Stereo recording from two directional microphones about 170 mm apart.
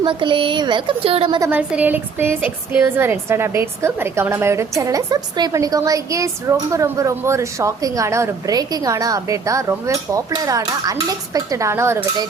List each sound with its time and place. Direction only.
0.0 s a woman's voice: 30° right (ahead or behind)
1.4 s a woman's voice: 10° right (ahead or behind)